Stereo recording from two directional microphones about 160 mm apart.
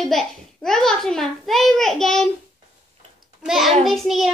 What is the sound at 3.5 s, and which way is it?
Speech, centre (ahead or behind).